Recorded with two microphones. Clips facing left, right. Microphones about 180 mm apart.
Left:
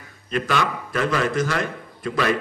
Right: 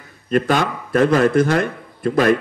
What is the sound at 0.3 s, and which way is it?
A man's voice, 45° right (ahead or behind).